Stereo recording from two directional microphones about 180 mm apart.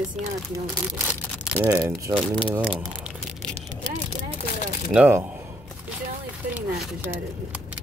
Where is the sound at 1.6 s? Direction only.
20° right (ahead or behind).